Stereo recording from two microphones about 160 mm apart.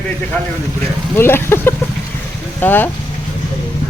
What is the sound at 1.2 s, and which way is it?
Speech, 15° left (ahead or behind).